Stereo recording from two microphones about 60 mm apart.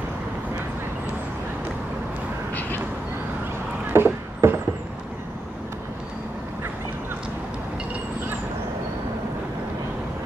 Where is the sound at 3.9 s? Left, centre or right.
Right.